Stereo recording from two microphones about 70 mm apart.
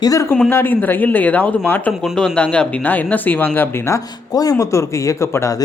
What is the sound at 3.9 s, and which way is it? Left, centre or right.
Speech, left.